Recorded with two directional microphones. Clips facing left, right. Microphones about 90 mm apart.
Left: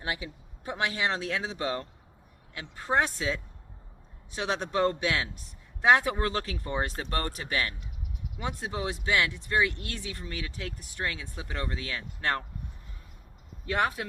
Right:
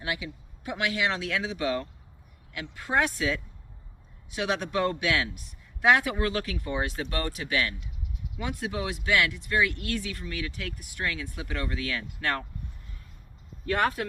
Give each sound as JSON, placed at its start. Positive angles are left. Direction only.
{"t": 0.0, "sound": "speech", "side_deg": 35}